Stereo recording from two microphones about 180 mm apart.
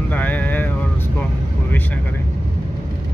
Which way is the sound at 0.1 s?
10° left (ahead or behind).